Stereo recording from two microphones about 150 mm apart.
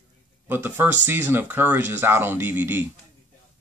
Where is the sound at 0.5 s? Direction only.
15° right (ahead or behind).